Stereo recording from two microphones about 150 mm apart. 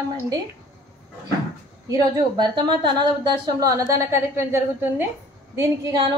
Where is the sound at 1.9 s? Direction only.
30° right (ahead or behind).